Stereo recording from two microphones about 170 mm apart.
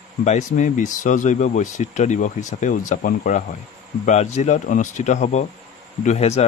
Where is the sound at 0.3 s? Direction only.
45° left (ahead or behind).